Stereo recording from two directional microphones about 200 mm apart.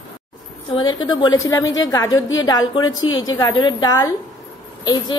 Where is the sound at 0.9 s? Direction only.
20° left (ahead or behind).